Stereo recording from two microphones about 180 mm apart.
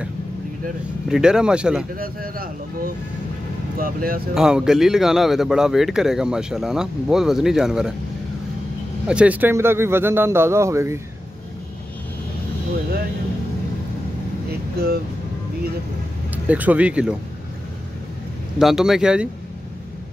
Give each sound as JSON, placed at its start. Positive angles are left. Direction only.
{"t": 1.0, "sound": "a man's voice", "side_deg": -5}
{"t": 2.0, "sound": "speech", "side_deg": -55}
{"t": 4.4, "sound": "a man's voice", "side_deg": -5}
{"t": 9.0, "sound": "a man's voice", "side_deg": -5}
{"t": 16.3, "sound": "speech", "side_deg": -10}
{"t": 18.6, "sound": "a man's voice", "side_deg": 0}